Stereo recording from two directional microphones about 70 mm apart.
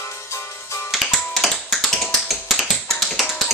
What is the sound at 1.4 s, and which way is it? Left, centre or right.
Music, centre.